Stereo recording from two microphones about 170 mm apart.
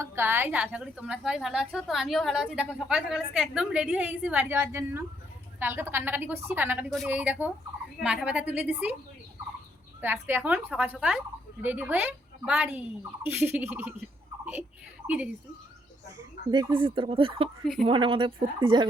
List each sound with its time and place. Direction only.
0.0 s a woman's voice: 15° right (ahead or behind)
10.0 s a woman's voice: 10° right (ahead or behind)
15.0 s a woman's voice: 10° right (ahead or behind)
16.5 s speech: 25° right (ahead or behind)